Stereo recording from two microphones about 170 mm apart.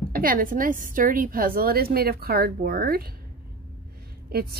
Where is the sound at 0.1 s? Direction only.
55° right (ahead or behind).